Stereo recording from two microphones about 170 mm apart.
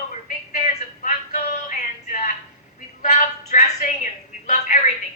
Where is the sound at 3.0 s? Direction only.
45° left (ahead or behind).